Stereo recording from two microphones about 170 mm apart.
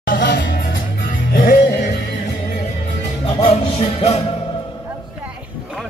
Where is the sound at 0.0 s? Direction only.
90° left.